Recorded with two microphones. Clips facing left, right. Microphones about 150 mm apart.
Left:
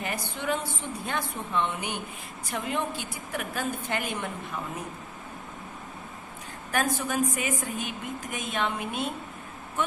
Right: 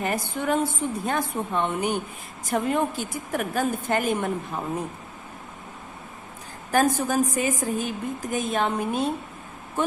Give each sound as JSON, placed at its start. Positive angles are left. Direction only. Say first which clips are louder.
{"t": 0.0, "sound": "a woman's voice", "louder": "right 5 dB", "side_deg": -45}
{"t": 6.7, "sound": "a woman's voice", "louder": "right 6 dB", "side_deg": -35}